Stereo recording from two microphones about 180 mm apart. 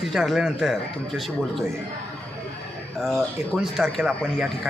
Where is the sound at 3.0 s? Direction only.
Centre (ahead or behind).